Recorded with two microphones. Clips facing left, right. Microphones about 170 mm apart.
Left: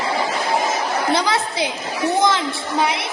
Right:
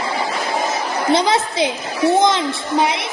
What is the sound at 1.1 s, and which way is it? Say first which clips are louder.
Speech: right 4 dB; 20° right (ahead or behind).